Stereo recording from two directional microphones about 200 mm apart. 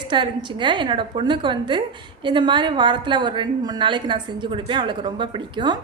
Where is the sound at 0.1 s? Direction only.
25° right (ahead or behind).